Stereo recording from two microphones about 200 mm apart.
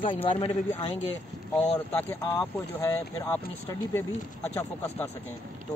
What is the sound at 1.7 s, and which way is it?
Speech, 10° left (ahead or behind).